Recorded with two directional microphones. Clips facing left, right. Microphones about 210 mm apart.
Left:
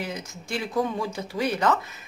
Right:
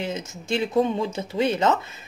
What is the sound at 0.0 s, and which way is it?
Speech, 25° right (ahead or behind).